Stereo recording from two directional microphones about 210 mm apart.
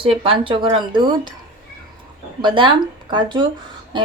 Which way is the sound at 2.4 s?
25° right (ahead or behind).